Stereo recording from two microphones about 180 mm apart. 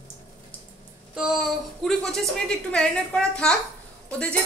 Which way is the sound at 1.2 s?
Centre (ahead or behind).